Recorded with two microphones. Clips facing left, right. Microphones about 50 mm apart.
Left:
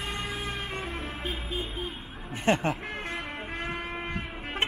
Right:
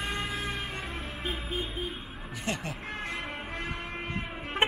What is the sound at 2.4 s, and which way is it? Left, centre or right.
Speech, left.